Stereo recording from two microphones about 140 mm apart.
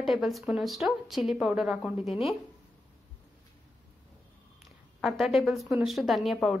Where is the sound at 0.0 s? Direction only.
Centre (ahead or behind).